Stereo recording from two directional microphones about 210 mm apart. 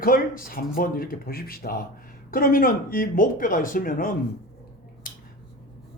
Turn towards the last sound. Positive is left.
turn(degrees=40)  # may be behind; listen again after turning